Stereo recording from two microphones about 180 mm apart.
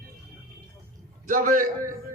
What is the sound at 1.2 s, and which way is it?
Speech, 50° right (ahead or behind).